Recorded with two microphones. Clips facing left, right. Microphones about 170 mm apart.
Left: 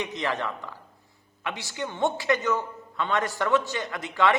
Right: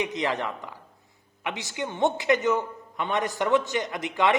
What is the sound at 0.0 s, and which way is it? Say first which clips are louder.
A woman's voice: right 2 dB; 15° right (ahead or behind).